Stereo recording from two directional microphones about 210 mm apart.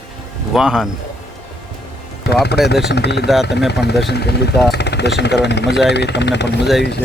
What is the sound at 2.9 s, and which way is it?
Speech, 55° left (ahead or behind).